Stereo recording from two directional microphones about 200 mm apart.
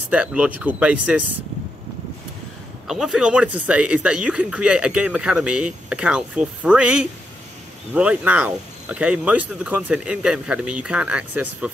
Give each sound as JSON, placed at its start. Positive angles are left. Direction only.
{"t": 0.1, "sound": "speech", "side_deg": -5}
{"t": 2.9, "sound": "speech", "side_deg": 0}